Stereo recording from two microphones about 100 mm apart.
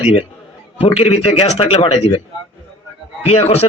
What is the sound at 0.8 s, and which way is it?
A man's voice, 90° left.